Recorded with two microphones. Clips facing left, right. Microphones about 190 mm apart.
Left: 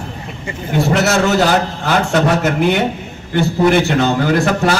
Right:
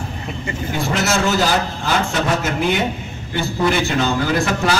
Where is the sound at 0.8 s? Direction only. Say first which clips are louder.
Left 6 dB; 65° left (ahead or behind).